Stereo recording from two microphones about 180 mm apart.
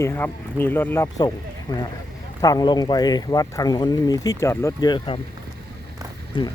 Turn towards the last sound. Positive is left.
turn(degrees=25)  # may be behind; listen again after turning